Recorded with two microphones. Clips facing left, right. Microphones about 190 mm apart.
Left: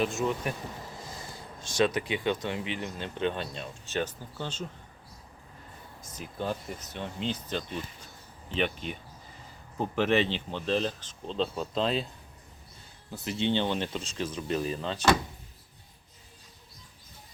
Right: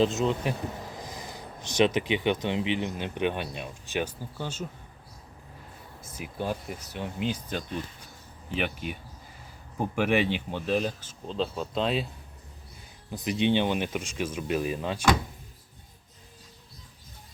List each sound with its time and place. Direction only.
0.0 s speech: 20° right (ahead or behind)
6.0 s speech: 10° right (ahead or behind)
13.1 s speech: 15° right (ahead or behind)